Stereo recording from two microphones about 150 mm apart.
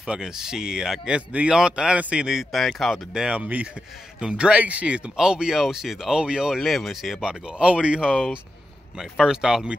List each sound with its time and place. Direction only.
0.0 s speech: 5° right (ahead or behind)